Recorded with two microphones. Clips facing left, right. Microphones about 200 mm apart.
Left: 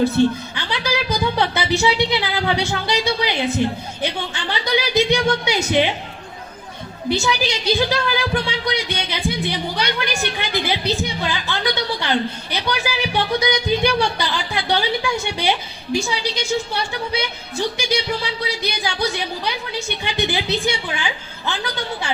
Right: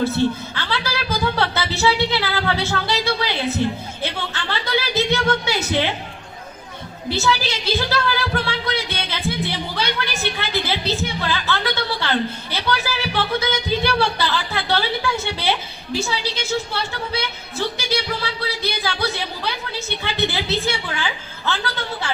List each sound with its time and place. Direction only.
0.0 s music: 15° left (ahead or behind)
7.1 s a woman's voice: 15° left (ahead or behind)